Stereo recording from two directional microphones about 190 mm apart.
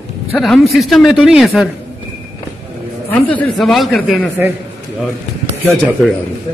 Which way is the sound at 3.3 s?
5° left (ahead or behind).